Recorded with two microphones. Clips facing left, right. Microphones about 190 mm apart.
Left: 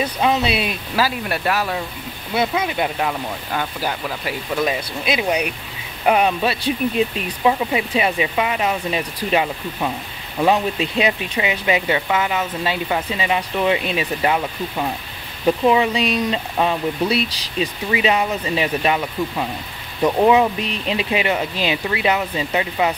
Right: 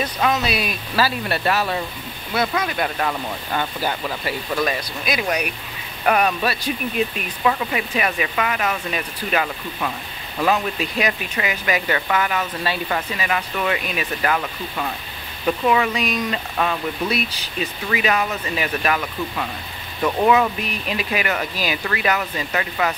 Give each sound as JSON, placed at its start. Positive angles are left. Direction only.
{"t": 0.3, "sound": "speech", "side_deg": 25}
{"t": 0.9, "sound": "speech", "side_deg": 15}
{"t": 6.0, "sound": "speech", "side_deg": 15}